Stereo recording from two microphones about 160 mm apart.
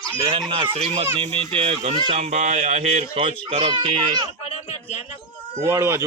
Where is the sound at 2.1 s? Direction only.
45° right (ahead or behind).